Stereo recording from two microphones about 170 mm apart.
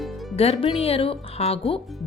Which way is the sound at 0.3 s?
35° left (ahead or behind).